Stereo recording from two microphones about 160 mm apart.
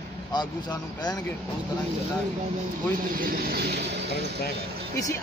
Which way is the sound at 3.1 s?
70° right (ahead or behind).